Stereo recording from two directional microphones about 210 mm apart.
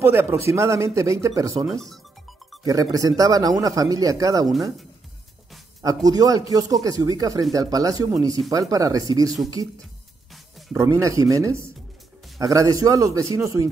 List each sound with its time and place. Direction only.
0.0 s a man's voice: 15° right (ahead or behind)
1.7 s speech: centre (ahead or behind)
2.6 s a man's voice: 15° right (ahead or behind)
6.0 s a man's voice: 15° right (ahead or behind)
10.7 s a man's voice: 15° right (ahead or behind)